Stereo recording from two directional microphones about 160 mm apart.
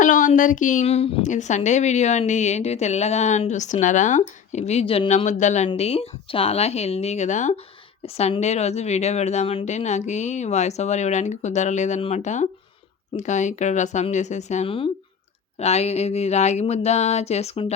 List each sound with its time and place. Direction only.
0.0 s a woman's voice: 55° left (ahead or behind)
5.6 s a woman's voice: 40° left (ahead or behind)